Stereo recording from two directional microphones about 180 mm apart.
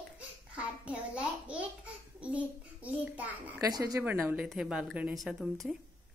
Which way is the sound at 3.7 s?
20° right (ahead or behind).